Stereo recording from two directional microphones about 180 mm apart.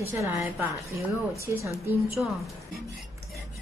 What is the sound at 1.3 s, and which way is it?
Speech, 15° right (ahead or behind).